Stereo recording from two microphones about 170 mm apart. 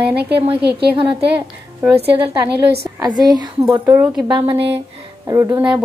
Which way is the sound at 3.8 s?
15° right (ahead or behind).